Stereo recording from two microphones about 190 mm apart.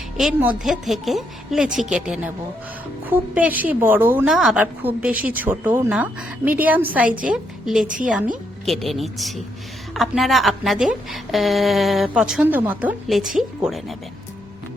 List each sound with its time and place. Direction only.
0.2 s a woman's voice: centre (ahead or behind)
7.9 s speech: 45° right (ahead or behind)
8.6 s a woman's voice: centre (ahead or behind)